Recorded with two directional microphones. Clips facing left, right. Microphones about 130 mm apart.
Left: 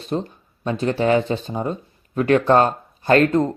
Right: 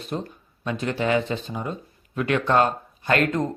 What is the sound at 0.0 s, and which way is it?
Speech, 30° left (ahead or behind).